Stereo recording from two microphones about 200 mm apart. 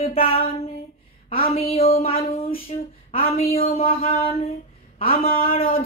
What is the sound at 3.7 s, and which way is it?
Speech, 30° left (ahead or behind).